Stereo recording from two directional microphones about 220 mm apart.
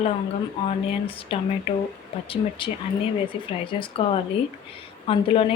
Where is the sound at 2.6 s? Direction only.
25° left (ahead or behind).